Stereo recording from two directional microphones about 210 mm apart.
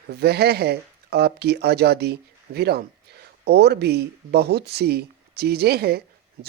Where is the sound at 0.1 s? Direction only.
50° right (ahead or behind).